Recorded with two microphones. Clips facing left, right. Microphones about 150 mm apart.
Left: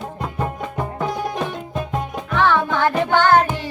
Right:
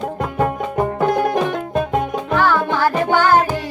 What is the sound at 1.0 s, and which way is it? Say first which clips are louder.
Music: right 6 dB; 65° right (ahead or behind).